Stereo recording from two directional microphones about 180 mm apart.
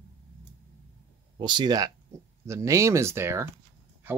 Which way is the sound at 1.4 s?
25° right (ahead or behind).